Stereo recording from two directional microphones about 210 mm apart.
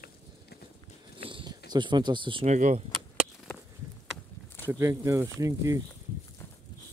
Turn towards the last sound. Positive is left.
turn(degrees=-15)  # may be behind; listen again after turning